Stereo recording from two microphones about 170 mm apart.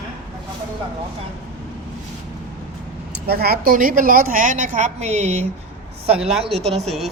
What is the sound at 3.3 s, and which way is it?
A woman's voice, 65° right (ahead or behind).